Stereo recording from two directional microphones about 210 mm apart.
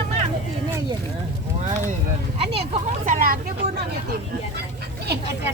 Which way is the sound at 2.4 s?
30° right (ahead or behind).